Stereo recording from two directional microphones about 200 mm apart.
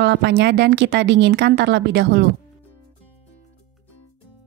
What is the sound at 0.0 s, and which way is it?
Speech, 55° right (ahead or behind).